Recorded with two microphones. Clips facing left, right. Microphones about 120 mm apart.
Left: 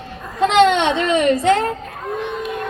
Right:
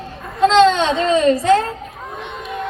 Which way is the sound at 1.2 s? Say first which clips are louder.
Right 2 dB; 25° left (ahead or behind).